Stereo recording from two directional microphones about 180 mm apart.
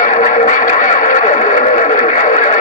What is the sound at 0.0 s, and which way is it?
Radio, 45° left (ahead or behind).